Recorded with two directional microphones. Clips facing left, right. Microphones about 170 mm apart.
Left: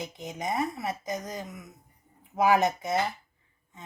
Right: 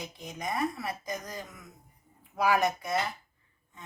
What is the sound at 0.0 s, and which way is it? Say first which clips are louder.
Speech: left 3 dB; 20° left (ahead or behind).